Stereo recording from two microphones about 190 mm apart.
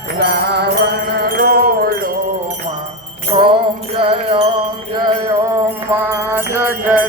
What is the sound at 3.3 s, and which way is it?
Music, 30° right (ahead or behind).